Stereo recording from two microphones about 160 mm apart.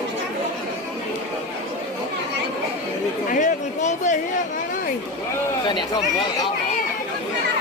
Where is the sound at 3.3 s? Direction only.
50° left (ahead or behind).